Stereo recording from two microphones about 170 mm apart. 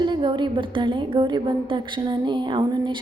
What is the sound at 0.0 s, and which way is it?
A woman's voice, 30° right (ahead or behind).